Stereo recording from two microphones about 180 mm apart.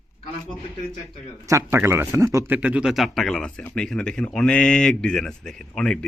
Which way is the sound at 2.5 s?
5° right (ahead or behind).